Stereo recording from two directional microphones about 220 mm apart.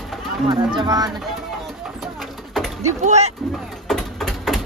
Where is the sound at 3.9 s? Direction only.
Centre (ahead or behind).